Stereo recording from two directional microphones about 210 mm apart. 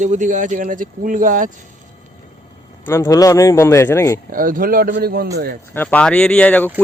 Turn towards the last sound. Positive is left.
turn(degrees=5)  # may be behind; listen again after turning